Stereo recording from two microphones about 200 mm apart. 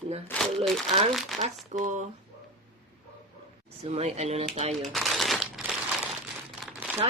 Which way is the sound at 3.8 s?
30° right (ahead or behind).